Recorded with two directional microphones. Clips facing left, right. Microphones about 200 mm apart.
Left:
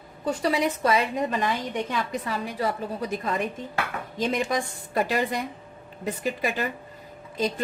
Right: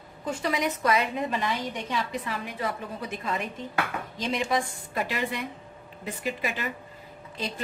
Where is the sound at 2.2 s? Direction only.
35° left (ahead or behind).